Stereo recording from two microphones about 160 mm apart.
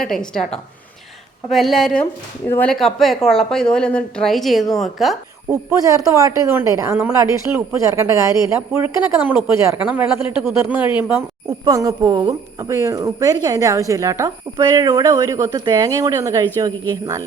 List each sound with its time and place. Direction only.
0.0 s a woman's voice: 5° left (ahead or behind)
5.5 s speech: 20° right (ahead or behind)